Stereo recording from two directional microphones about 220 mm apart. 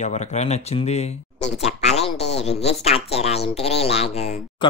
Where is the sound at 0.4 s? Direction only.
30° left (ahead or behind).